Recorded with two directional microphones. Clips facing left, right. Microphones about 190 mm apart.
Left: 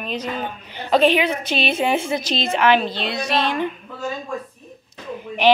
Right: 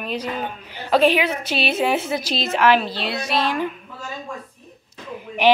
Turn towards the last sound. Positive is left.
turn(degrees=-10)  # may be behind; listen again after turning